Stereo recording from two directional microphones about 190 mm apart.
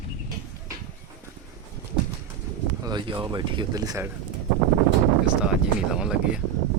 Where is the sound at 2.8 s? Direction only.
25° right (ahead or behind).